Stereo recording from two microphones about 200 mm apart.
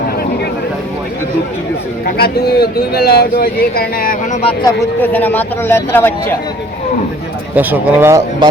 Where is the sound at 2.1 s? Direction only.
50° left (ahead or behind); by 4.7 s 30° left (ahead or behind).